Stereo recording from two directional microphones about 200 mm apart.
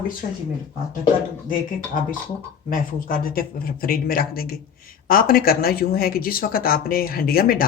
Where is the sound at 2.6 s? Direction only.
45° left (ahead or behind).